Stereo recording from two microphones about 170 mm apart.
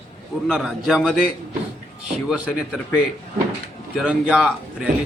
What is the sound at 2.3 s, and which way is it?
Speech, 5° right (ahead or behind).